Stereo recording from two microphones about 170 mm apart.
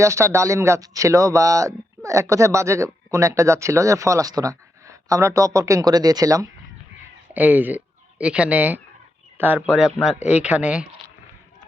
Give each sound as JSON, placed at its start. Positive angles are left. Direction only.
{"t": 0.0, "sound": "speech", "side_deg": -15}
{"t": 7.3, "sound": "speech", "side_deg": -10}